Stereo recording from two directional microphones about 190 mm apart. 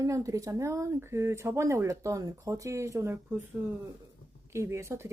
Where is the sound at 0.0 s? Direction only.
15° right (ahead or behind).